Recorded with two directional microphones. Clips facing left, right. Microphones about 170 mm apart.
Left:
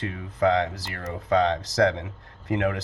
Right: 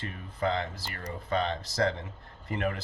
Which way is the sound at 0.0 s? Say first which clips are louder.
Left 8 dB; 85° left.